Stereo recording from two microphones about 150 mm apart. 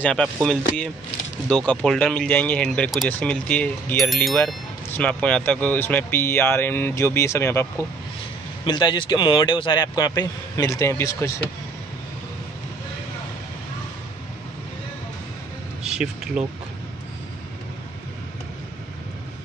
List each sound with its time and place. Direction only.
0.0 s speech: 5° left (ahead or behind)
8.6 s a man's voice: 30° left (ahead or behind)
15.8 s speech: 5° right (ahead or behind)